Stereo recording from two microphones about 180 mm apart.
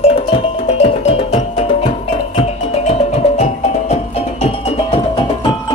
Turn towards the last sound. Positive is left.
turn(degrees=40)  # may be behind; listen again after turning